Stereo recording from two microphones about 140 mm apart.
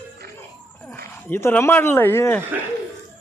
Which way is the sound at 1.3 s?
15° left (ahead or behind).